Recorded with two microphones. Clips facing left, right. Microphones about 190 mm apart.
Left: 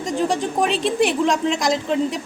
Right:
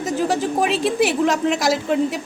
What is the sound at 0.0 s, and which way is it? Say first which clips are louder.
Speech: right 1 dB; 5° right (ahead or behind).